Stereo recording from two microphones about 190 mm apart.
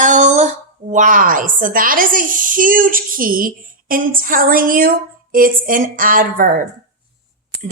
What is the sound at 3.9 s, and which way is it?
A woman's voice, 45° right (ahead or behind).